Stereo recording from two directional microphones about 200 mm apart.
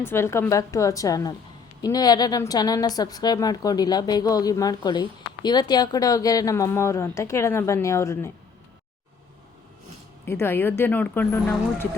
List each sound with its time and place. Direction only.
0.0 s a woman's voice: 10° left (ahead or behind)
10.2 s speech: 10° left (ahead or behind)